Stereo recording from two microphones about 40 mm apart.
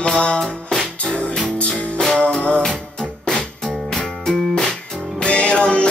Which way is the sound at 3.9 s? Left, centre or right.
Centre.